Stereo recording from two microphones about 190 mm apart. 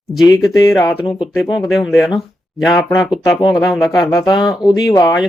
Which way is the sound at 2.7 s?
20° left (ahead or behind).